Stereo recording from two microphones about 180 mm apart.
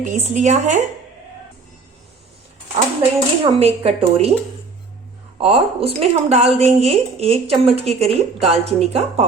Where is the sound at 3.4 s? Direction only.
35° right (ahead or behind).